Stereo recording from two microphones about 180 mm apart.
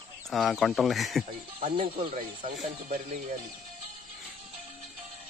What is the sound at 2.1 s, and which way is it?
Speech, 45° right (ahead or behind).